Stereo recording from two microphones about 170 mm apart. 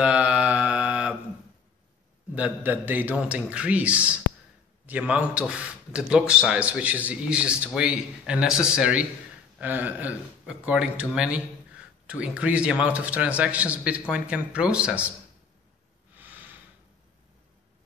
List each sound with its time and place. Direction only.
0.0 s mantra: 5° right (ahead or behind)
2.3 s a man's voice: 10° right (ahead or behind)
16.2 s snort: 10° right (ahead or behind)